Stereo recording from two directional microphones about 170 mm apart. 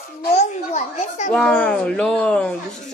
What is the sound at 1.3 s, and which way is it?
Speech, 5° left (ahead or behind).